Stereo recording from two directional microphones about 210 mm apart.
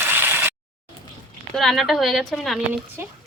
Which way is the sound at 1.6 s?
Centre (ahead or behind).